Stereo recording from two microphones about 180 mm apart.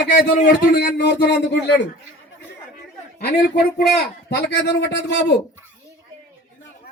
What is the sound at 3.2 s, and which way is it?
A man's voice, 65° left (ahead or behind).